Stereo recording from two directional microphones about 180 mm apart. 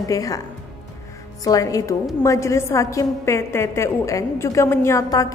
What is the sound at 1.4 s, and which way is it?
A woman's voice, 20° left (ahead or behind).